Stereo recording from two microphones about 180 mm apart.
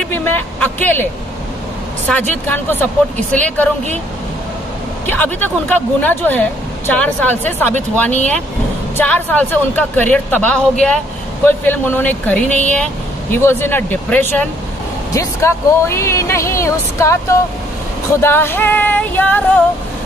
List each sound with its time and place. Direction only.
0.1 s vehicle: 10° left (ahead or behind)
2.0 s speech: 10° left (ahead or behind)
5.0 s speech: 10° left (ahead or behind)
8.9 s speech: 10° left (ahead or behind)